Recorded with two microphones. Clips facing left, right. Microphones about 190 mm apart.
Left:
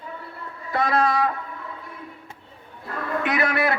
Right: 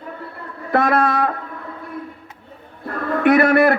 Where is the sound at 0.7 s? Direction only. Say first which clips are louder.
Right 4 dB; 60° right (ahead or behind).